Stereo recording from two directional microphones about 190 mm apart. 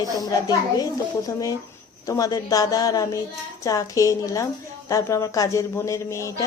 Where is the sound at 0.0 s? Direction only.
20° left (ahead or behind).